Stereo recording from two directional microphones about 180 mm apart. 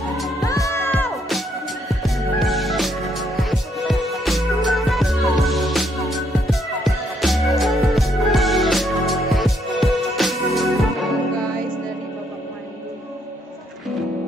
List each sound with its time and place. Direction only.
0.4 s music: 20° left (ahead or behind)
1.9 s music: centre (ahead or behind)